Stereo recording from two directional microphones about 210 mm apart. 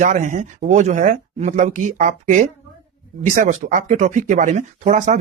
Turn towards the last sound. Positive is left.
turn(degrees=-35)  # may be behind; listen again after turning